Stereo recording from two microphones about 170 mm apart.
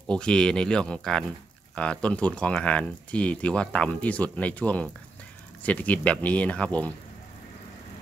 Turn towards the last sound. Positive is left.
turn(degrees=10)  # may be behind; listen again after turning